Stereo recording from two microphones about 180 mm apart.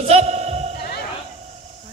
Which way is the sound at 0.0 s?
35° right (ahead or behind).